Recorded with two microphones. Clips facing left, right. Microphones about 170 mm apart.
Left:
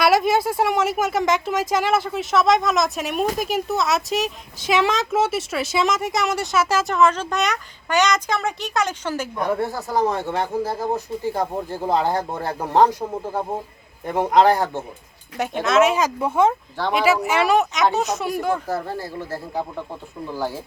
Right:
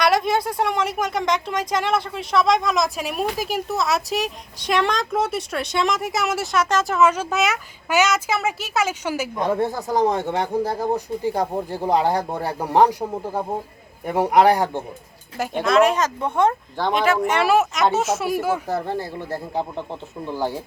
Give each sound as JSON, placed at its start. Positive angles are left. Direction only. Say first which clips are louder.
{"t": 0.0, "sound": "speech", "louder": "left 2 dB", "side_deg": 5}
{"t": 15.4, "sound": "speech", "louder": "even", "side_deg": 0}
{"t": 18.7, "sound": "speech", "louder": "right 1 dB", "side_deg": -20}